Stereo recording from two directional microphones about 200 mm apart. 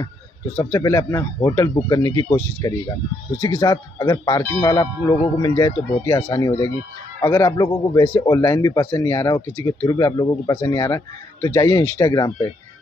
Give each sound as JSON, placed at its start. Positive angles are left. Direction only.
{"t": 0.6, "sound": "speech", "side_deg": 15}